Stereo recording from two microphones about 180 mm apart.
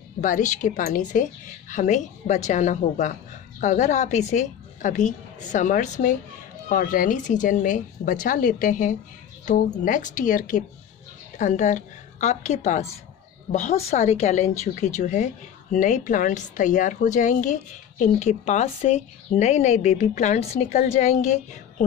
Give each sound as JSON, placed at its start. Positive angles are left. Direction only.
{"t": 0.2, "sound": "a woman's voice", "side_deg": 45}